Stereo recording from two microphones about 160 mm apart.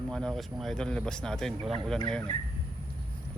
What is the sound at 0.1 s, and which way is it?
Speech, 5° left (ahead or behind).